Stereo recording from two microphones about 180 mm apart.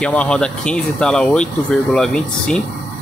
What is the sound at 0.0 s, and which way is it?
Speech, 5° left (ahead or behind).